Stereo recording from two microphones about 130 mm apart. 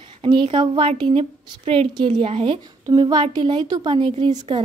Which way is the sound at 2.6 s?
35° right (ahead or behind).